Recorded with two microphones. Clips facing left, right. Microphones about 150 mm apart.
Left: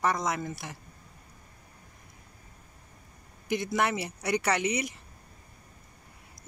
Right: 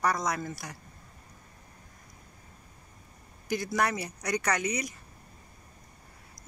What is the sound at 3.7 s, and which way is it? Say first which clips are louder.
Speech: even; 25° left (ahead or behind).